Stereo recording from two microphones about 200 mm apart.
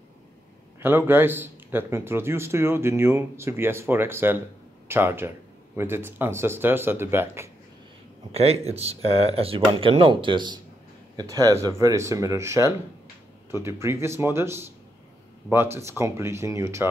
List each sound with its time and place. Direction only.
0.7 s speech: 10° right (ahead or behind)
8.3 s speech: 30° right (ahead or behind); by 16.8 s 15° right (ahead or behind)